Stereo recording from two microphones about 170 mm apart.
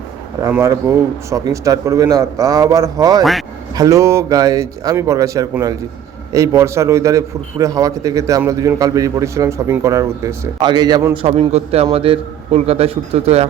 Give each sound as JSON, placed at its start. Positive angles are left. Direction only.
{"t": 0.4, "sound": "a man's voice", "side_deg": -20}